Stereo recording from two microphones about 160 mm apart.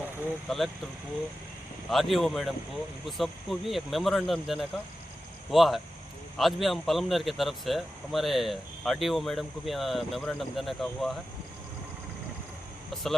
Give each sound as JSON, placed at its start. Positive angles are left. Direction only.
{"t": 0.5, "sound": "a man's voice", "side_deg": 0}
{"t": 1.9, "sound": "a man's voice", "side_deg": 0}
{"t": 12.9, "sound": "a man's voice", "side_deg": 0}